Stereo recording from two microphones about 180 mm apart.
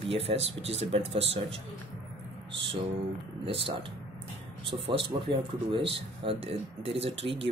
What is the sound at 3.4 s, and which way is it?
Speech, 30° right (ahead or behind).